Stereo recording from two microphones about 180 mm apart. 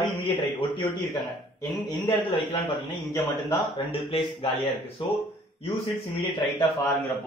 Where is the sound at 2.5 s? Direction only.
25° left (ahead or behind).